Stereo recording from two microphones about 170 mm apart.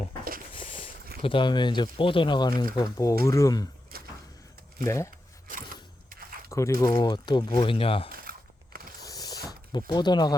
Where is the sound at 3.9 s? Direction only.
60° right (ahead or behind).